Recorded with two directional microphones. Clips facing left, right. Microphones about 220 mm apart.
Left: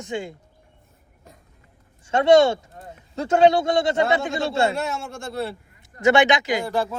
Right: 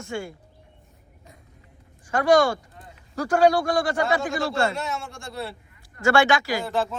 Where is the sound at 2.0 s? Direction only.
25° left (ahead or behind).